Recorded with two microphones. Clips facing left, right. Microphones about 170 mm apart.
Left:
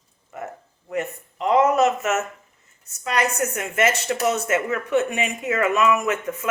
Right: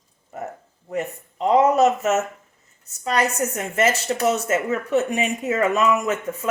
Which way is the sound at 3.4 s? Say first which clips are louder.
Right 1 dB; 35° right (ahead or behind).